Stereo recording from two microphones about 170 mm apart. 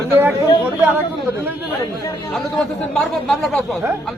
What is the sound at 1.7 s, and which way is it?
Speech, 20° left (ahead or behind).